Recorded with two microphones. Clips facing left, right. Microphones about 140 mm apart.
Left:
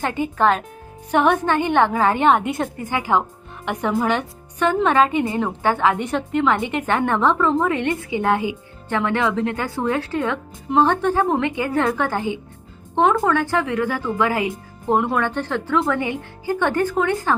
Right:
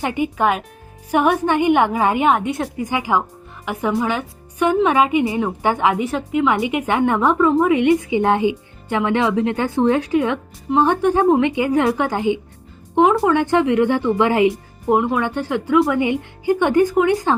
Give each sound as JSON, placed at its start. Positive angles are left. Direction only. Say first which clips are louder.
{"t": 0.0, "sound": "speech", "louder": "even", "side_deg": -15}
{"t": 2.7, "sound": "speech", "louder": "right 1 dB", "side_deg": -15}
{"t": 6.0, "sound": "speech", "louder": "right 2 dB", "side_deg": -5}
{"t": 14.8, "sound": "speech", "louder": "right 2 dB", "side_deg": -5}